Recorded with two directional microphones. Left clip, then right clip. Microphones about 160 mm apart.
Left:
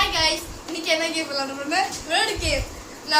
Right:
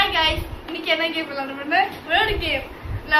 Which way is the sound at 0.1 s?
15° left (ahead or behind).